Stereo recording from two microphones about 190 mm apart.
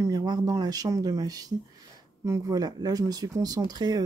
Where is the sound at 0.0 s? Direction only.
20° right (ahead or behind).